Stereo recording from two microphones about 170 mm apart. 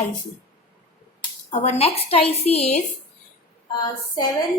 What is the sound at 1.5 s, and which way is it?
A woman's voice, 40° left (ahead or behind).